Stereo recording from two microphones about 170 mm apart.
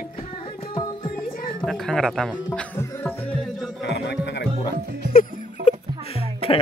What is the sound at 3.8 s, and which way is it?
Music, 85° left.